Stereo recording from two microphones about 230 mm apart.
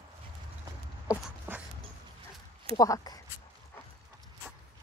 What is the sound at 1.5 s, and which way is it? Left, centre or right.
Dog, centre.